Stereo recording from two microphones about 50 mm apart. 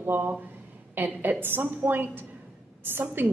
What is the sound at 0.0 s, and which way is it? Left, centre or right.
A woman's voice, right.